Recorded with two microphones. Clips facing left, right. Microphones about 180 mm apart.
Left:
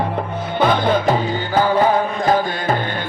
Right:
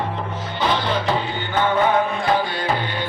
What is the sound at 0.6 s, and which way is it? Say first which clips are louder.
Music: left 6 dB; 50° left (ahead or behind).